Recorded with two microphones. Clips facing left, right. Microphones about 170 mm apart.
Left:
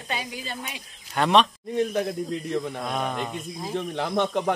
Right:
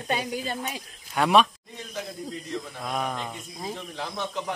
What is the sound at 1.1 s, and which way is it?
Speech, 5° right (ahead or behind).